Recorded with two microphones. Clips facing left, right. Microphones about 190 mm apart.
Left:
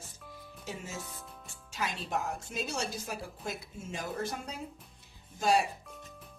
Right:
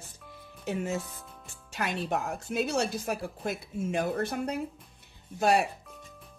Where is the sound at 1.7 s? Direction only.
60° right (ahead or behind).